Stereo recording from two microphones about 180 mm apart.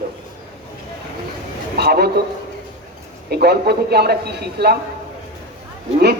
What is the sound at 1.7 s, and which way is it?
Speech, 60° right (ahead or behind).